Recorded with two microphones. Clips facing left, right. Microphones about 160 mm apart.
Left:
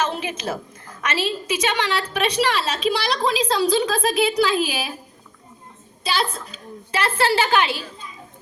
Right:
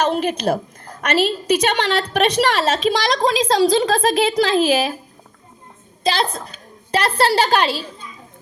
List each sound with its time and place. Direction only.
0.5 s a woman's voice: 45° right (ahead or behind)
6.0 s a woman's voice: 40° right (ahead or behind)